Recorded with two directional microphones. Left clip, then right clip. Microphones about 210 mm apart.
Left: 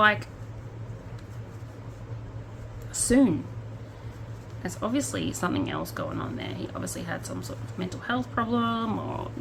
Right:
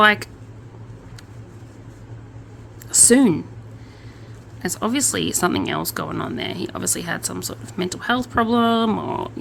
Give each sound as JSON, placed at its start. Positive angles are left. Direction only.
{"t": 0.0, "sound": "speech", "side_deg": -55}
{"t": 2.9, "sound": "a woman's voice", "side_deg": -55}
{"t": 4.6, "sound": "speech", "side_deg": -55}